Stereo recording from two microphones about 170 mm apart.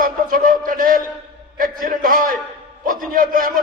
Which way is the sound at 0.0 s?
55° right (ahead or behind).